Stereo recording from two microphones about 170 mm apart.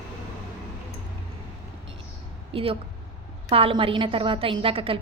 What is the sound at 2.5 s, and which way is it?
A woman's voice, 35° right (ahead or behind).